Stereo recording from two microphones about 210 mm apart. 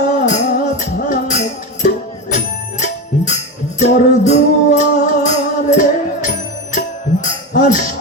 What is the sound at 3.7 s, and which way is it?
Music, 35° left (ahead or behind).